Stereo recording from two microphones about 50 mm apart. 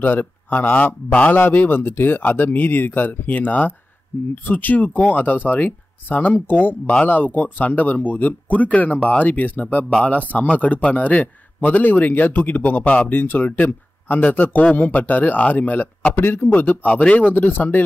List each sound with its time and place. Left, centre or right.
0.0 s speech: left
4.1 s speech: left
4.5 s speech: left
17.3 s speech: left